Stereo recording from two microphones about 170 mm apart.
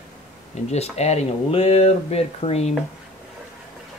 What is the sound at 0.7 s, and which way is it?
Speech, 40° left (ahead or behind).